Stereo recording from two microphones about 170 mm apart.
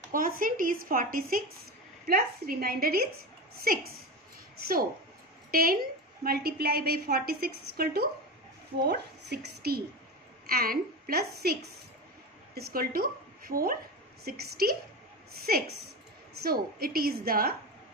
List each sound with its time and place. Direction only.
0.1 s a woman's voice: 55° right (ahead or behind)
5.5 s a woman's voice: 60° right (ahead or behind)
12.5 s a woman's voice: 65° right (ahead or behind)